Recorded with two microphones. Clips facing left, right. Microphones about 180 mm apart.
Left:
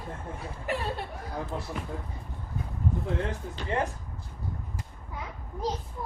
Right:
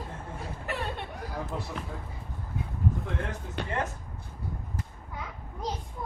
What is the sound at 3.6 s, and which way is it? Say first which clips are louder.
Speech: right 2 dB; 65° right (ahead or behind).